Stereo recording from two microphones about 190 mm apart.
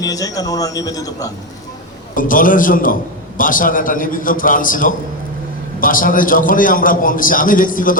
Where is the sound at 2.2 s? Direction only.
45° left (ahead or behind).